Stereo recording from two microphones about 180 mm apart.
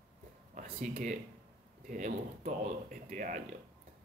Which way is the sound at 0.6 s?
45° right (ahead or behind).